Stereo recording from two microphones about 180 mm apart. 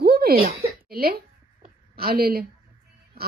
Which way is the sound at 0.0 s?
60° right (ahead or behind).